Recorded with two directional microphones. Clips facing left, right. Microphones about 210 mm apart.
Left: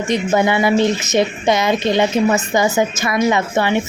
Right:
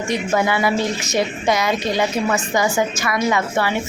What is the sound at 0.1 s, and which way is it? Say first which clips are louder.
Speech: left 4 dB; 20° left (ahead or behind).